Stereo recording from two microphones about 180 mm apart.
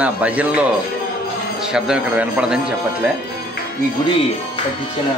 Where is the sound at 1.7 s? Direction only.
5° right (ahead or behind).